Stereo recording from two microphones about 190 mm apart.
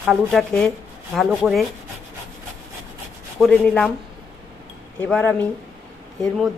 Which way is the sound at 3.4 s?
Centre (ahead or behind).